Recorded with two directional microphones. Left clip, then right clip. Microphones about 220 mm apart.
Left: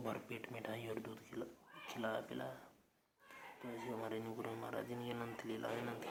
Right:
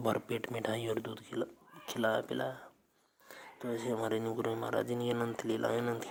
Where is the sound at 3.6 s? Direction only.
40° right (ahead or behind).